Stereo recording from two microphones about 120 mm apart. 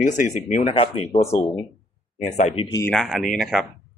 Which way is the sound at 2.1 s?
80° left.